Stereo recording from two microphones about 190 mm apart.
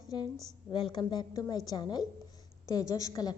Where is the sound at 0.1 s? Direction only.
20° left (ahead or behind).